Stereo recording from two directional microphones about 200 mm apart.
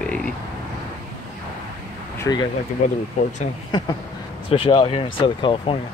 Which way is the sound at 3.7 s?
20° left (ahead or behind).